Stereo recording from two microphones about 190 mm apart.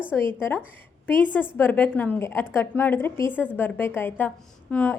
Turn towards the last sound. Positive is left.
turn(degrees=10)  # may be behind; listen again after turning